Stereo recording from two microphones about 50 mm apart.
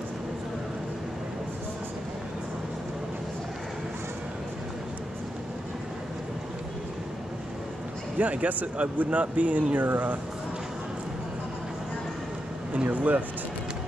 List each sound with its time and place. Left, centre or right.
8.2 s speech: right
12.8 s speech: right